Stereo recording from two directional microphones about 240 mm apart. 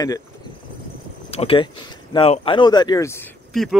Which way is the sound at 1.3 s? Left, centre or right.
Left.